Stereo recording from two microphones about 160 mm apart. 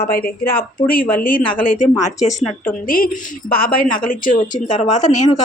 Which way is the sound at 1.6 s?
50° left (ahead or behind).